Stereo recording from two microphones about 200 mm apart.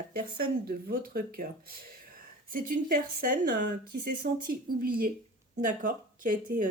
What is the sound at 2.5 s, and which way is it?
A woman's voice, 45° right (ahead or behind).